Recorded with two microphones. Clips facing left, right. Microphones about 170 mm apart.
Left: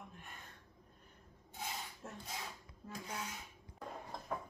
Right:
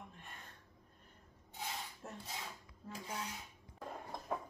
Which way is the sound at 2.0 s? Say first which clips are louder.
Even; 15° right (ahead or behind).